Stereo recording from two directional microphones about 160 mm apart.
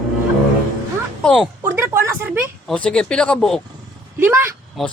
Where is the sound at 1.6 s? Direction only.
15° right (ahead or behind).